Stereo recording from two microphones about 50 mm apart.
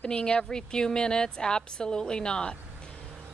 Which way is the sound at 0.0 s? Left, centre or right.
Centre.